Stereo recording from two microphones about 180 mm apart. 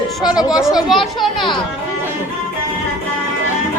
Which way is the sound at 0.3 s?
20° left (ahead or behind).